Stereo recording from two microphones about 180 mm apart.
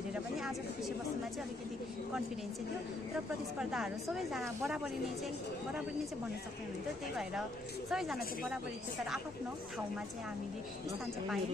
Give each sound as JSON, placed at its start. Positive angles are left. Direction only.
{"t": 0.1, "sound": "a sound", "side_deg": 0}
{"t": 3.5, "sound": "a woman's voice", "side_deg": -5}
{"t": 7.9, "sound": "a woman's voice", "side_deg": -5}